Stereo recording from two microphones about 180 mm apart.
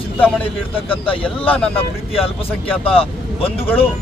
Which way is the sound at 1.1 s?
30° left (ahead or behind).